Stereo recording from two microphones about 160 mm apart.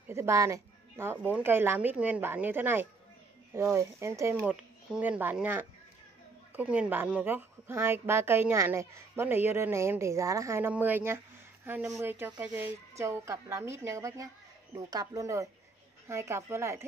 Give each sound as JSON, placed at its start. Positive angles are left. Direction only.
{"t": 0.1, "sound": "a woman's voice", "side_deg": -15}
{"t": 4.5, "sound": "a woman's voice", "side_deg": -10}